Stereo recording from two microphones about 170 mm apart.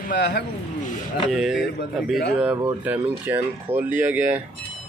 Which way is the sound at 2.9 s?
10° right (ahead or behind).